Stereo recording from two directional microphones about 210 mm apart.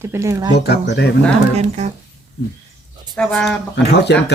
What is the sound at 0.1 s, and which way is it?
Speech, 15° right (ahead or behind).